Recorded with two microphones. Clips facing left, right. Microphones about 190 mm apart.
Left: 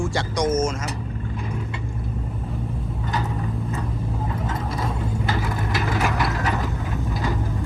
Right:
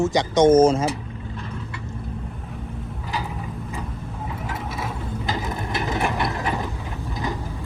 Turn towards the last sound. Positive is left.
turn(degrees=-20)  # may be behind; listen again after turning